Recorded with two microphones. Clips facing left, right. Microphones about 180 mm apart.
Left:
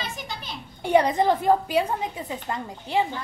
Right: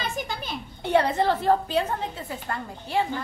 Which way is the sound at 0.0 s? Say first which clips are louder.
Right 4 dB; 50° right (ahead or behind).